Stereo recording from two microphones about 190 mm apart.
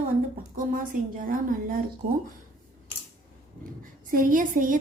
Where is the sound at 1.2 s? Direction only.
45° right (ahead or behind).